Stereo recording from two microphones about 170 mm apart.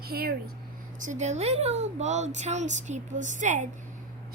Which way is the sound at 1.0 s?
45° right (ahead or behind).